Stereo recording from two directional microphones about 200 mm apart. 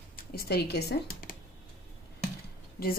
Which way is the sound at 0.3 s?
50° left (ahead or behind).